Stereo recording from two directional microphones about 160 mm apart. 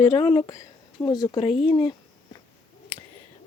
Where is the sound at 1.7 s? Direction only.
25° left (ahead or behind).